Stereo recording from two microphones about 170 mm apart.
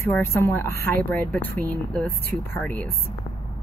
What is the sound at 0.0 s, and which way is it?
Speech, 15° left (ahead or behind).